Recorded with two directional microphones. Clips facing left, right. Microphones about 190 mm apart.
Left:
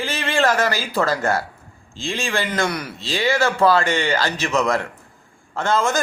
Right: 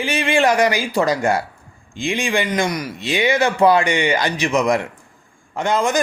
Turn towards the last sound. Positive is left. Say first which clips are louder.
# right 1 dB
turn(degrees=-15)  # may be behind; listen again after turning